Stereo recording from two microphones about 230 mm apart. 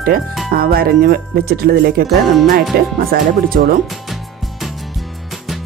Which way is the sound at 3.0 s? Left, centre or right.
Right.